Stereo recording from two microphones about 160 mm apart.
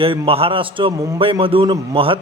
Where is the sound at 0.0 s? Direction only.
35° right (ahead or behind).